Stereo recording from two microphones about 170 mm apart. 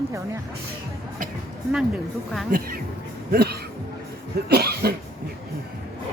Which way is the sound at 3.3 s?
65° right (ahead or behind).